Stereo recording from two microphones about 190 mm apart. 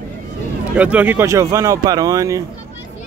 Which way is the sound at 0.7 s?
5° right (ahead or behind).